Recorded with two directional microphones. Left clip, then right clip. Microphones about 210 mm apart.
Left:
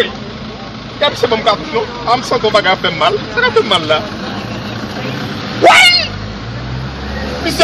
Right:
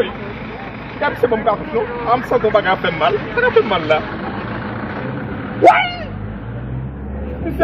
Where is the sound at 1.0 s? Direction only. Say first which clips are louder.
Left 4 dB; 10° left (ahead or behind).